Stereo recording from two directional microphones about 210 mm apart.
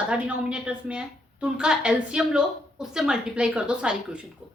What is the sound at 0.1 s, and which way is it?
A woman's voice, 5° right (ahead or behind).